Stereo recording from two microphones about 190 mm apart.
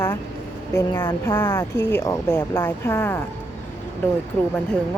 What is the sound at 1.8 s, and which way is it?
Speech, 60° left (ahead or behind).